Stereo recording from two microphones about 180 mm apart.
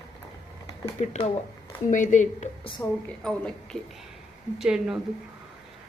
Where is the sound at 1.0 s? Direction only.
40° left (ahead or behind).